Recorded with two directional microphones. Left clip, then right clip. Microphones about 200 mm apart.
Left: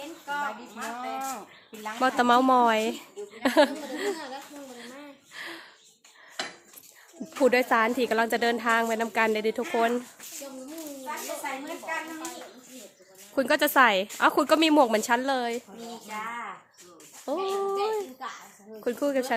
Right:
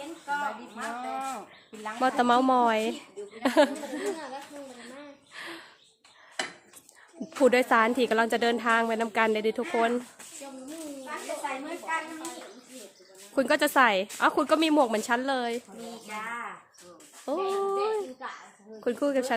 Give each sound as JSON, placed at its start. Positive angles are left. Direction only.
{"t": 0.3, "sound": "a woman's voice", "side_deg": 5}
{"t": 5.3, "sound": "gasp", "side_deg": -5}
{"t": 7.3, "sound": "a woman's voice", "side_deg": -10}
{"t": 13.3, "sound": "a woman's voice", "side_deg": 0}
{"t": 17.2, "sound": "a sound", "side_deg": 0}
{"t": 18.2, "sound": "a child's voice", "side_deg": 55}
{"t": 18.9, "sound": "a woman's voice", "side_deg": -5}